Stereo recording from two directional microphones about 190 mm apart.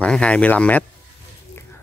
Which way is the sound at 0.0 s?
5° left (ahead or behind).